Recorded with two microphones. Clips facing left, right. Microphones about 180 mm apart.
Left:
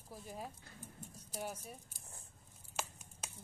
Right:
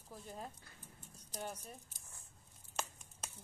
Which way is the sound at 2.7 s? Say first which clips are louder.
Even; 5° left (ahead or behind).